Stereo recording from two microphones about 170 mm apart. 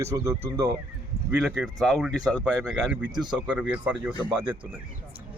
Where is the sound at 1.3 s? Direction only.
5° right (ahead or behind).